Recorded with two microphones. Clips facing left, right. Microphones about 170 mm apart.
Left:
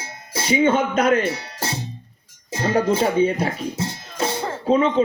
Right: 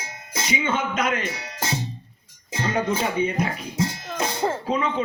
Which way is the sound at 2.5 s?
40° left (ahead or behind).